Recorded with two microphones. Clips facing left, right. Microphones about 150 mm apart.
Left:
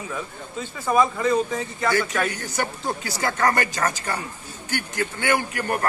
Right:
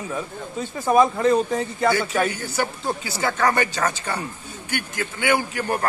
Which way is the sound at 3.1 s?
10° right (ahead or behind).